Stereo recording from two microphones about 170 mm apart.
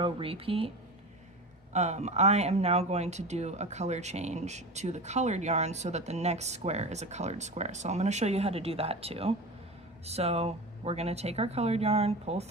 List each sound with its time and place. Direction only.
0.0 s speech: 30° right (ahead or behind)
1.7 s speech: 40° right (ahead or behind)